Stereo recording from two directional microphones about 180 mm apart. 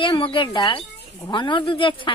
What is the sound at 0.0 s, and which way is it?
Speech, 30° left (ahead or behind).